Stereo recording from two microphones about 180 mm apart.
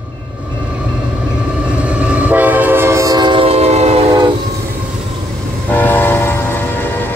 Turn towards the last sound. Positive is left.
turn(degrees=10)  # may be behind; listen again after turning